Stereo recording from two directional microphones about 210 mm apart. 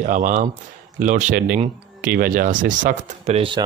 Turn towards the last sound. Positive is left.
turn(degrees=-25)  # may be behind; listen again after turning